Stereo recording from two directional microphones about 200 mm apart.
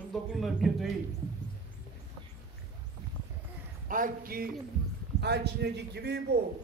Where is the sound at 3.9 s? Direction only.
45° right (ahead or behind).